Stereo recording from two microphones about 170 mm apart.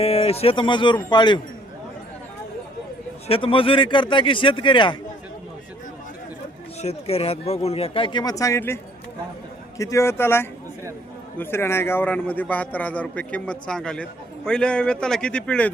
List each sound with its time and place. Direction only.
0.0 s speech: 35° left (ahead or behind)
3.2 s speech: 30° left (ahead or behind)
6.8 s a man's voice: 35° left (ahead or behind); by 15.7 s 5° left (ahead or behind)